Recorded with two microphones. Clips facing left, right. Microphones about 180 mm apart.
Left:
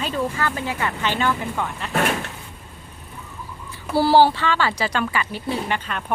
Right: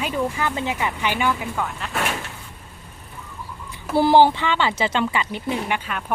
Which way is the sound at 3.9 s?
20° right (ahead or behind).